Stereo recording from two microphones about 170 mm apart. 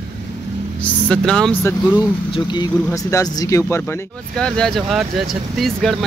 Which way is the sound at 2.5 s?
20° left (ahead or behind).